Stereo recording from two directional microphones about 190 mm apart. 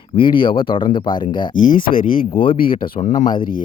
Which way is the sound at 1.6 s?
45° left (ahead or behind).